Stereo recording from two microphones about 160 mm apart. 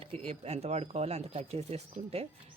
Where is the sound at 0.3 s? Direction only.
40° right (ahead or behind).